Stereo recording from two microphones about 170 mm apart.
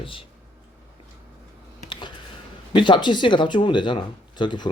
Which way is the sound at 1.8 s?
25° left (ahead or behind).